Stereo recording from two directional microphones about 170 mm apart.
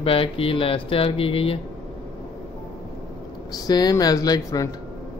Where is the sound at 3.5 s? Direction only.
25° left (ahead or behind).